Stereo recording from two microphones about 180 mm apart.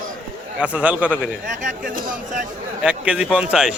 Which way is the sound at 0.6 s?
5° right (ahead or behind).